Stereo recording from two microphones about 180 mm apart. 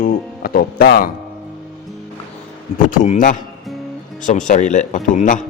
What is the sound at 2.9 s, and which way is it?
A man's voice, 45° left (ahead or behind).